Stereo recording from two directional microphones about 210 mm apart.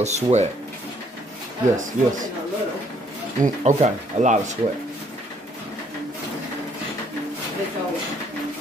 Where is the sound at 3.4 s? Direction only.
35° right (ahead or behind).